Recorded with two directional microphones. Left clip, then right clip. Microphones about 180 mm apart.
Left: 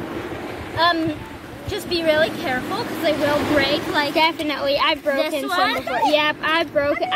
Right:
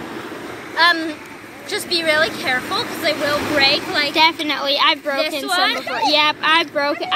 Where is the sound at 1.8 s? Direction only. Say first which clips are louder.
Right 1 dB; 20° left (ahead or behind).